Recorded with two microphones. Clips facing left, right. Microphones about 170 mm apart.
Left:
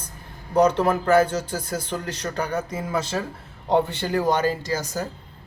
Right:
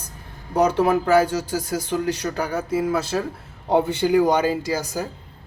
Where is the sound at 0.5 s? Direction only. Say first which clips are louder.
Right 1 dB; 10° right (ahead or behind).